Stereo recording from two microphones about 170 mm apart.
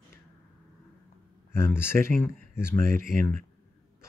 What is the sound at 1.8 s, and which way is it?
Speech, 15° left (ahead or behind).